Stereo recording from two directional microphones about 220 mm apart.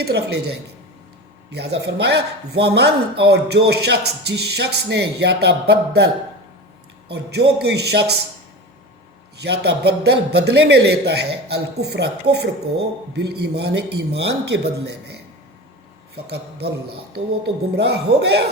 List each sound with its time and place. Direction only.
0.0 s speech: 45° right (ahead or behind)
7.1 s speech: 50° right (ahead or behind)
9.4 s speech: 50° right (ahead or behind)
16.2 s speech: 50° right (ahead or behind)